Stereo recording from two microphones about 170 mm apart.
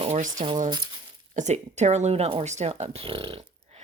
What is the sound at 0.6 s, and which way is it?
Speech, 25° right (ahead or behind).